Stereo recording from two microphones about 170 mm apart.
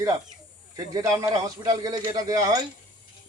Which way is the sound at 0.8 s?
20° right (ahead or behind).